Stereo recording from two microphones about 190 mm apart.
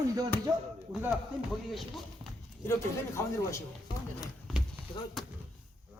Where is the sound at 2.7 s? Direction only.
15° left (ahead or behind).